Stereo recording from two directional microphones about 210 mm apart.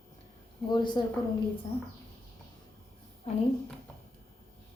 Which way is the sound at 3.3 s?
30° left (ahead or behind).